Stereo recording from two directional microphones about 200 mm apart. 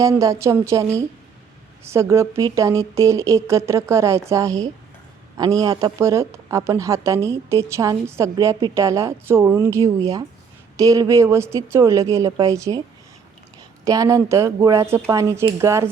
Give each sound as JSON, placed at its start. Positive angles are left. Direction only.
{"t": 0.0, "sound": "speech", "side_deg": -15}
{"t": 13.8, "sound": "speech", "side_deg": -15}